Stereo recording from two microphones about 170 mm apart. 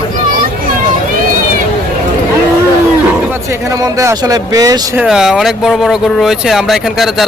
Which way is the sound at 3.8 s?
20° right (ahead or behind).